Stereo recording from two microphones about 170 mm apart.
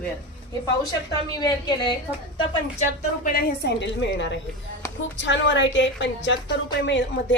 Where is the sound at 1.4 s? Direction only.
25° left (ahead or behind).